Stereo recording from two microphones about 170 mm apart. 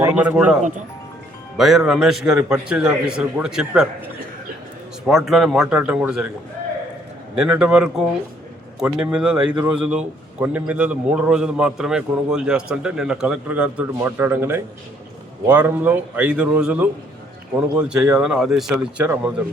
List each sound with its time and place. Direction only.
0.1 s a man's voice: 5° right (ahead or behind)
7.3 s a man's voice: 5° right (ahead or behind)